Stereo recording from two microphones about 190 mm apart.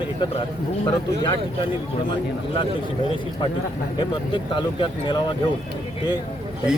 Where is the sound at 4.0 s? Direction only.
25° left (ahead or behind).